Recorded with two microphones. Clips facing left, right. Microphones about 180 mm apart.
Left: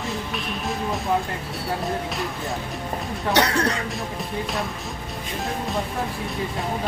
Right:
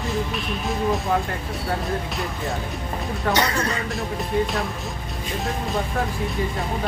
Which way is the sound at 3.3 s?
70° left (ahead or behind).